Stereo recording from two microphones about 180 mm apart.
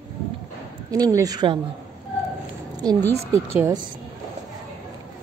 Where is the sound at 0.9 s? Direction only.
20° right (ahead or behind).